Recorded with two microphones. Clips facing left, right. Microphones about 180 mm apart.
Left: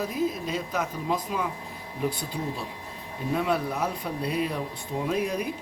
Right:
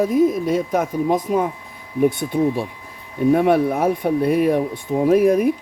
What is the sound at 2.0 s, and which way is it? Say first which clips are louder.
Speech: right 12 dB; 85° right.